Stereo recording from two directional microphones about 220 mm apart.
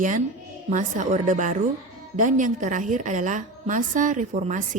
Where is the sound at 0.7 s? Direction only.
35° right (ahead or behind).